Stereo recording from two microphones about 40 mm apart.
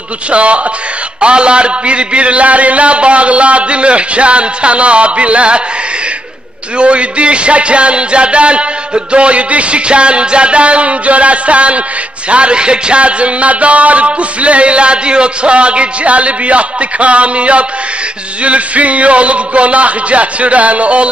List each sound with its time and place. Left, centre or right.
0.3 s speech: right
6.8 s music: right
12.3 s speech: right